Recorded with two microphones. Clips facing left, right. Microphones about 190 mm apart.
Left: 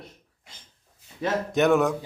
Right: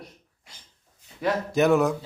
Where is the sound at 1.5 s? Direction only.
Centre (ahead or behind).